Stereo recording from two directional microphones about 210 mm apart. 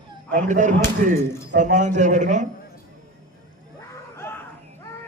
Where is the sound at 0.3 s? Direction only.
35° right (ahead or behind).